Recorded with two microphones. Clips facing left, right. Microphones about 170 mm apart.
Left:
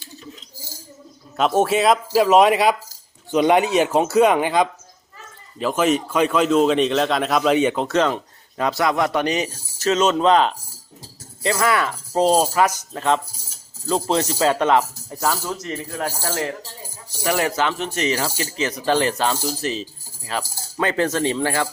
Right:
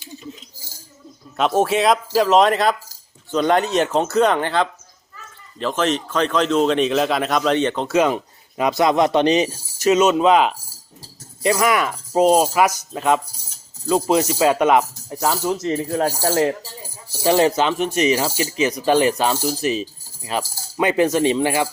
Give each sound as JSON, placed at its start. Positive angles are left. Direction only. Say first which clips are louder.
{"t": 1.4, "sound": "a man's voice", "louder": "even", "side_deg": 0}
{"t": 7.9, "sound": "speech", "louder": "right 2 dB", "side_deg": -10}
{"t": 11.6, "sound": "speech", "louder": "right 1 dB", "side_deg": -15}